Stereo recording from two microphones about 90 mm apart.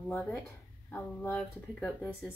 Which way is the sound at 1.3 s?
10° left (ahead or behind).